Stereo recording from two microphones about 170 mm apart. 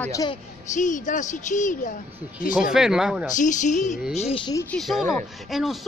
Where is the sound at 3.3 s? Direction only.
50° left (ahead or behind).